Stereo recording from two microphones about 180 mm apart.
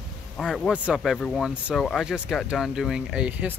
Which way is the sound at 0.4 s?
Centre (ahead or behind).